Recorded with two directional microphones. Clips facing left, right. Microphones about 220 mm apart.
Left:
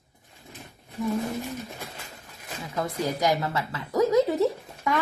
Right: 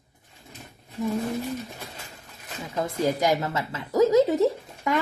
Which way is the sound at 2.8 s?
20° right (ahead or behind).